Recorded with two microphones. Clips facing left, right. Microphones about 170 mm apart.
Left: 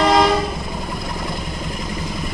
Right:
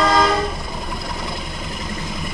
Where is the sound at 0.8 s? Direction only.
Centre (ahead or behind).